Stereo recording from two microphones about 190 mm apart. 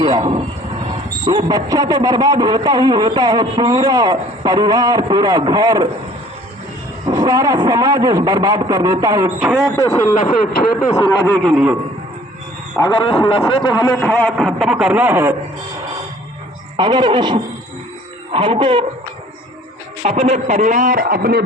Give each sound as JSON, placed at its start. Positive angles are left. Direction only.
{"t": 0.0, "sound": "speech", "side_deg": -20}
{"t": 7.1, "sound": "speech", "side_deg": -20}
{"t": 10.2, "sound": "speech", "side_deg": 50}
{"t": 11.4, "sound": "a man's voice", "side_deg": -5}
{"t": 12.7, "sound": "speech", "side_deg": 25}
{"t": 14.0, "sound": "a man's voice", "side_deg": 5}
{"t": 16.7, "sound": "speech", "side_deg": -25}
{"t": 20.0, "sound": "speech", "side_deg": -35}